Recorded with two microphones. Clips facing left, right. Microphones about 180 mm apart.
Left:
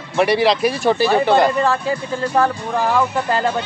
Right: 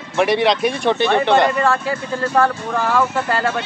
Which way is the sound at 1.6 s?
15° left (ahead or behind).